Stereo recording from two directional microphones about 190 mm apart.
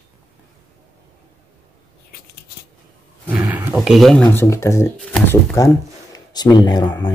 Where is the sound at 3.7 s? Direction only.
Centre (ahead or behind); by 4.9 s 15° left (ahead or behind).